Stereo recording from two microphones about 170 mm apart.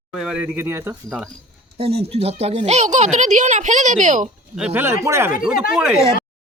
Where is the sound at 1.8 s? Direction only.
35° right (ahead or behind).